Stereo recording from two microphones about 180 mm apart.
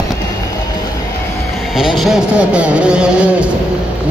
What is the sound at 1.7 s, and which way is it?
Speech, centre (ahead or behind).